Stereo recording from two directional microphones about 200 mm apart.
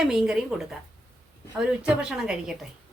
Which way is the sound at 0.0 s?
5° right (ahead or behind).